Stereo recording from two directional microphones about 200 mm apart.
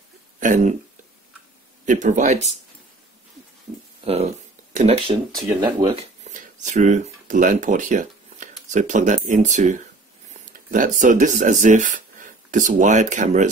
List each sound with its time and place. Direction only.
0.4 s speech: 40° right (ahead or behind)
1.9 s speech: 40° right (ahead or behind)
4.0 s speech: 30° right (ahead or behind)
6.2 s speech: 35° right (ahead or behind)